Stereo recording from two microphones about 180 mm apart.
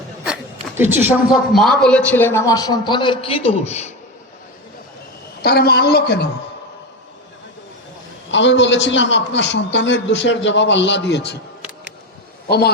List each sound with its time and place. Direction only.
0.8 s a woman's voice: 10° right (ahead or behind)
1.5 s a man's voice: centre (ahead or behind); by 3.9 s 40° left (ahead or behind)
5.4 s a woman's voice: 60° left (ahead or behind)
8.3 s a man's voice: 90° left; by 11.3 s 70° left (ahead or behind)
12.5 s a woman's voice: 65° left (ahead or behind)